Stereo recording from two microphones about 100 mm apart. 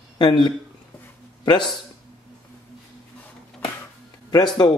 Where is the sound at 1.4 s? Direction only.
45° left (ahead or behind).